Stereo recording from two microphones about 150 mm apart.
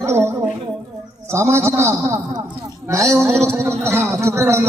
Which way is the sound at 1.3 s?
15° right (ahead or behind).